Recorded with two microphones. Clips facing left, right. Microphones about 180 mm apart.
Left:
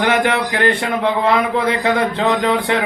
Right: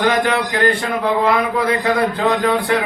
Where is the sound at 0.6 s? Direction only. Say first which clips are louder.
Left 1 dB; 25° left (ahead or behind).